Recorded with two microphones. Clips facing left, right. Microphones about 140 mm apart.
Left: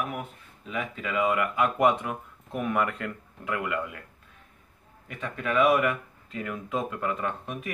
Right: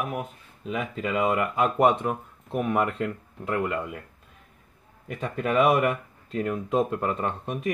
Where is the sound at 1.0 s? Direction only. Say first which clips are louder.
Right 1 dB; 35° right (ahead or behind).